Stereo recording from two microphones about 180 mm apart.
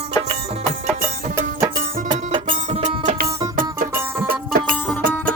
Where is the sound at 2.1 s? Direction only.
30° right (ahead or behind).